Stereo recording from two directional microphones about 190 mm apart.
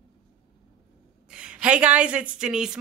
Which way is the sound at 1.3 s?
5° right (ahead or behind).